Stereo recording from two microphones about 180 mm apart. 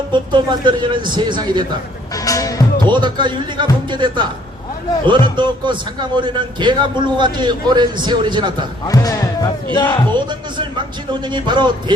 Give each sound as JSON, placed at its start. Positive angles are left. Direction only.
{"t": 0.1, "sound": "a man's voice", "side_deg": -25}
{"t": 2.1, "sound": "music", "side_deg": 20}
{"t": 2.9, "sound": "a man's voice", "side_deg": -25}
{"t": 8.9, "sound": "speech", "side_deg": 20}
{"t": 10.1, "sound": "a man's voice", "side_deg": -25}